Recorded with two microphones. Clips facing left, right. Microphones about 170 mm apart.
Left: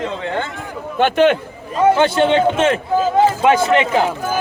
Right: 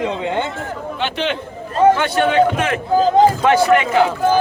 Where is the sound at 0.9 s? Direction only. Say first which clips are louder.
Left 10 dB; 50° left (ahead or behind).